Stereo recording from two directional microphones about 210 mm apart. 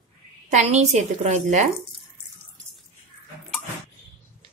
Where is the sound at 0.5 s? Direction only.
30° right (ahead or behind).